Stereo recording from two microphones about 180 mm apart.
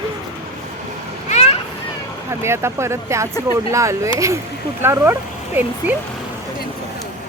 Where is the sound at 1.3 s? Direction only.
35° left (ahead or behind).